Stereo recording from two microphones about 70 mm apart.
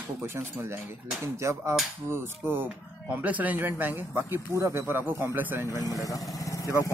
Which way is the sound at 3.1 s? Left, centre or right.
Right.